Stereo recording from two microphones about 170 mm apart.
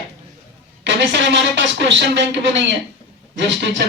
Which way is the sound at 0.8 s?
90° right.